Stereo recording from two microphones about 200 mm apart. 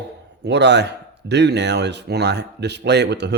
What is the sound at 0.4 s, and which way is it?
Speech, 60° right (ahead or behind).